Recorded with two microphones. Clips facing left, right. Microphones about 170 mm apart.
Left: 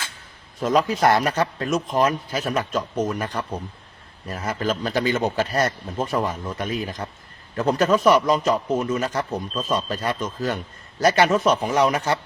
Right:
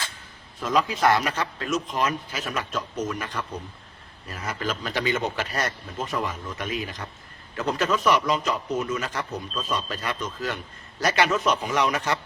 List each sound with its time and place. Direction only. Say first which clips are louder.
0.6 s speech: left 4 dB; 40° left (ahead or behind)